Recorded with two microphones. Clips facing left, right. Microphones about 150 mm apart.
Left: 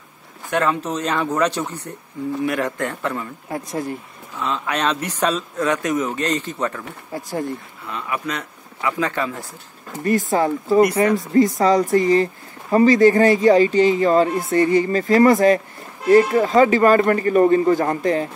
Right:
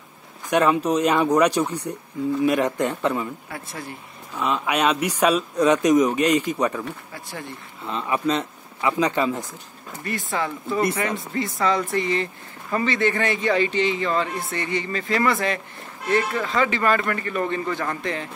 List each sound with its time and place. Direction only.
0.5 s speech: 15° right (ahead or behind)
3.5 s speech: 40° left (ahead or behind)
4.4 s speech: 15° right (ahead or behind)
7.8 s speech: 25° right (ahead or behind)
10.0 s speech: 40° left (ahead or behind)